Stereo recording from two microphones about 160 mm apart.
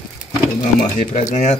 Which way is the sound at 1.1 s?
50° left (ahead or behind).